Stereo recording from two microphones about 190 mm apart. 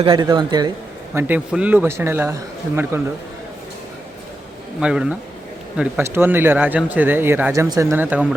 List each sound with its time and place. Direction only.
0.0 s speech: 25° right (ahead or behind)
1.1 s speech: 10° right (ahead or behind)
4.8 s speech: 5° right (ahead or behind)